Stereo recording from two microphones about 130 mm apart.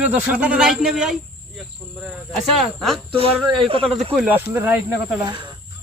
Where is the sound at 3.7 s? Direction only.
45° right (ahead or behind).